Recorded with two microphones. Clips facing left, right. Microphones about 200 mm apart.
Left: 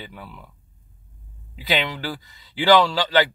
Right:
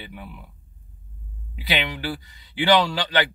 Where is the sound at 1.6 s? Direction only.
15° right (ahead or behind).